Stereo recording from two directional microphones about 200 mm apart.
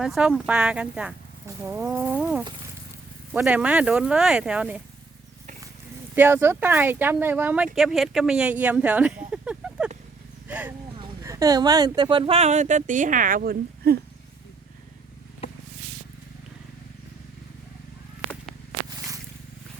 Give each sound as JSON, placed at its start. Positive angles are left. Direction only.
{"t": 0.0, "sound": "speech", "side_deg": -5}
{"t": 6.1, "sound": "speech", "side_deg": -10}
{"t": 10.5, "sound": "vehicle", "side_deg": -10}
{"t": 11.0, "sound": "speech", "side_deg": -15}
{"t": 15.4, "sound": "a sound", "side_deg": 30}